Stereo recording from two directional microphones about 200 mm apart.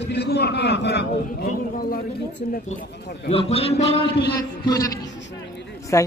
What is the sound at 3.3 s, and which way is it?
Speech, 30° left (ahead or behind).